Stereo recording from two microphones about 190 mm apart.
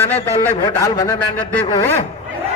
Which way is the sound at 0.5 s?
20° left (ahead or behind).